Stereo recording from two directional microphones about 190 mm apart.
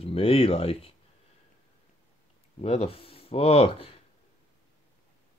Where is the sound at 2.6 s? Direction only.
30° left (ahead or behind).